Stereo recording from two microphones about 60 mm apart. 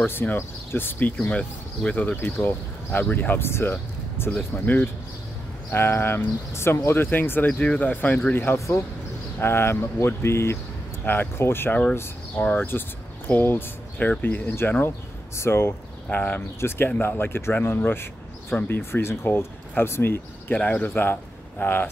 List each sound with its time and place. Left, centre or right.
0.0 s speech: left
1.3 s speech: centre
2.3 s speech: left
8.5 s speech: left
9.4 s speech: left
12.4 s speech: left
13.3 s speech: left
15.3 s speech: left
16.1 s speech: left
16.3 s speech: left
20.5 s speech: centre
20.9 s speech: left